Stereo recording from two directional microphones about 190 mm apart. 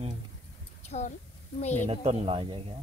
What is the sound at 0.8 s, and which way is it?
Speech, 35° left (ahead or behind).